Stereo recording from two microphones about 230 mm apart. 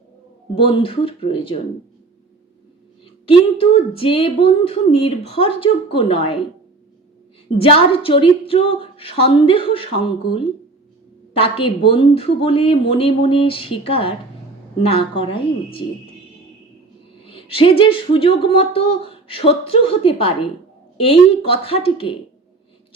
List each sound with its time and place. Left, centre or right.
0.5 s speech: left
3.2 s speech: left
7.6 s speech: left
17.2 s speech: left